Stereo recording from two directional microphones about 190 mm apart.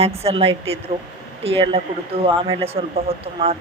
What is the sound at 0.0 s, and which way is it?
Speech, 30° right (ahead or behind).